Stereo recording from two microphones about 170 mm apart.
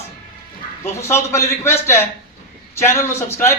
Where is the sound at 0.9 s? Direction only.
15° left (ahead or behind).